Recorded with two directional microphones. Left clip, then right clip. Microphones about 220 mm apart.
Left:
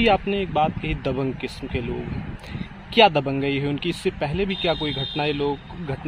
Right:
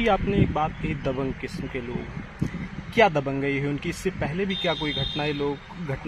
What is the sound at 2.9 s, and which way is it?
Speech, 55° left (ahead or behind).